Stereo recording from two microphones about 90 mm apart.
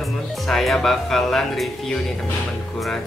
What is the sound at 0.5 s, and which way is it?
Speech, 5° left (ahead or behind).